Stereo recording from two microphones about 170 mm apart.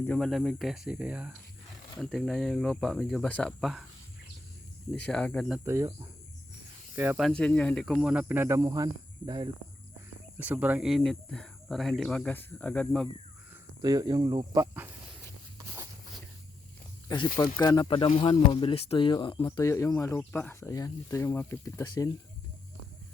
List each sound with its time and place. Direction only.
0.0 s speech: 5° left (ahead or behind)
5.0 s speech: 5° left (ahead or behind)
5.6 s speech: 15° right (ahead or behind)
7.2 s speech: 5° left (ahead or behind)
7.9 s speech: 5° right (ahead or behind); by 9.5 s 25° right (ahead or behind)
10.3 s speech: 10° right (ahead or behind); by 13.1 s 5° left (ahead or behind)
13.8 s speech: 25° right (ahead or behind)
15.5 s a sound: 15° right (ahead or behind)
17.1 s speech: 20° left (ahead or behind)
19.5 s speech: 20° left (ahead or behind)